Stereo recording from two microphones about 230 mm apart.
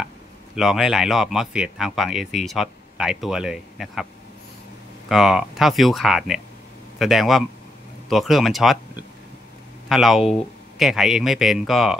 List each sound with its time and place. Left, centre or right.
0.6 s speech: centre